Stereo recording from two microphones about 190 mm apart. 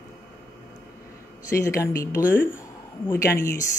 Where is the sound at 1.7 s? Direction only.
15° left (ahead or behind).